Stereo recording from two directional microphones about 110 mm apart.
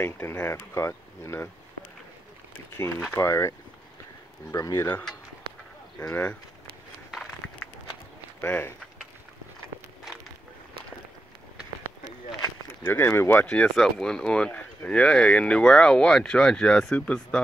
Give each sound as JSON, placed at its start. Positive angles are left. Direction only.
{"t": 0.0, "sound": "speech", "side_deg": 20}
{"t": 3.2, "sound": "speech", "side_deg": 25}
{"t": 5.9, "sound": "speech", "side_deg": 15}
{"t": 8.4, "sound": "speech", "side_deg": 20}
{"t": 12.6, "sound": "speech", "side_deg": 20}
{"t": 13.5, "sound": "speech", "side_deg": 5}